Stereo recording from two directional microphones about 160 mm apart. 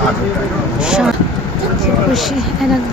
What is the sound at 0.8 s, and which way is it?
Speech, 5° right (ahead or behind).